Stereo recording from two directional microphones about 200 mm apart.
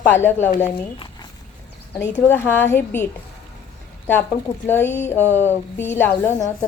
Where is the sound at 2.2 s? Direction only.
10° left (ahead or behind).